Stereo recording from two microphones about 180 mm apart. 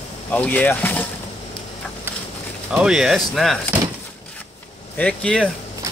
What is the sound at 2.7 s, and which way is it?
Speech, 5° right (ahead or behind).